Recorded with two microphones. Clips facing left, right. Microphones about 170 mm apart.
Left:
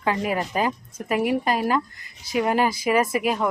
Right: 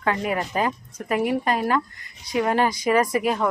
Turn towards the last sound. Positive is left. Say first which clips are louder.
# right 1 dB
turn(degrees=15)  # may be behind; listen again after turning